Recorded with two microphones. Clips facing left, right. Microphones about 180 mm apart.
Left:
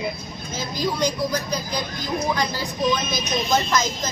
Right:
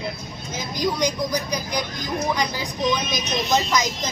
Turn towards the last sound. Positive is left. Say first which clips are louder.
# even
turn(degrees=-15)  # may be behind; listen again after turning